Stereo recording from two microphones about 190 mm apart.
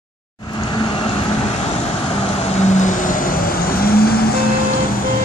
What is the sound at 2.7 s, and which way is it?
Vehicle, 40° left (ahead or behind).